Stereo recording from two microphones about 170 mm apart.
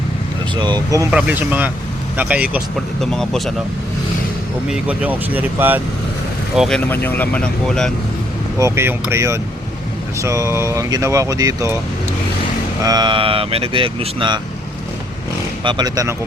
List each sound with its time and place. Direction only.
0.5 s speech: 25° right (ahead or behind)
1.1 s speech: 10° right (ahead or behind)
3.0 s speech: centre (ahead or behind)
4.7 s speech: 10° right (ahead or behind)
6.6 s speech: 5° left (ahead or behind)
8.5 s speech: 15° right (ahead or behind)
12.8 s speech: 25° right (ahead or behind)
15.6 s speech: 20° right (ahead or behind)